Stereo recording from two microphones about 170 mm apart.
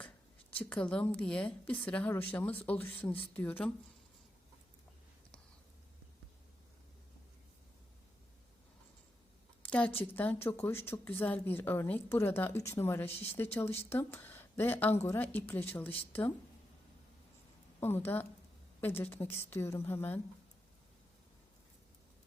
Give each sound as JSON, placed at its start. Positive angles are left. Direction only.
{"t": 0.5, "sound": "a woman's voice", "side_deg": 10}
{"t": 9.6, "sound": "a woman's voice", "side_deg": 5}
{"t": 17.7, "sound": "a woman's voice", "side_deg": 15}